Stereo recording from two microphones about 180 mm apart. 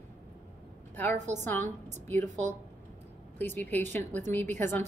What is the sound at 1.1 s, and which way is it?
Speech, 40° right (ahead or behind).